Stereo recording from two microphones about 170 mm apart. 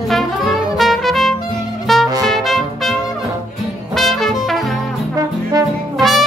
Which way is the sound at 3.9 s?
Centre (ahead or behind).